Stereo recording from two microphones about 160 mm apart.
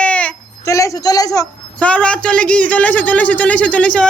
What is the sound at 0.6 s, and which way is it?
Speech, 20° left (ahead or behind).